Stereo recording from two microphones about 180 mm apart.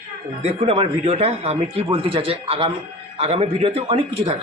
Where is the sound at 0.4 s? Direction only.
35° right (ahead or behind).